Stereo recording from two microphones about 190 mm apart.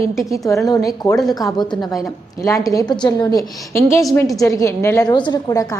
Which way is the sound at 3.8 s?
Centre (ahead or behind).